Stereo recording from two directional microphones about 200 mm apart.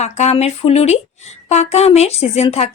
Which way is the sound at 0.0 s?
35° left (ahead or behind).